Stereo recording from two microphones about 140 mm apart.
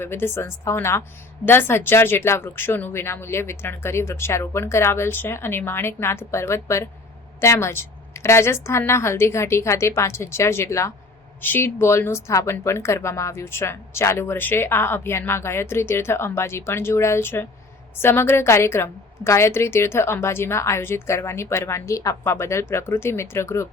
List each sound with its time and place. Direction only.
0.0 s a woman's voice: 15° left (ahead or behind)